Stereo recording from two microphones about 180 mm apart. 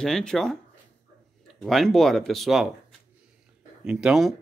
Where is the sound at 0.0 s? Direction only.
5° left (ahead or behind).